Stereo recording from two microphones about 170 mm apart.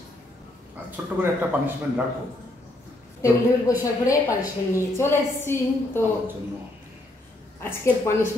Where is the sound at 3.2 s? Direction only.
20° left (ahead or behind).